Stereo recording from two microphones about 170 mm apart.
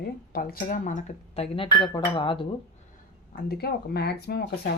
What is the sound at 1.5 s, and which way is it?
Speech, 30° left (ahead or behind).